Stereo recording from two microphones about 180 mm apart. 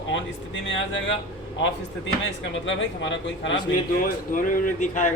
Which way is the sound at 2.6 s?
90° left.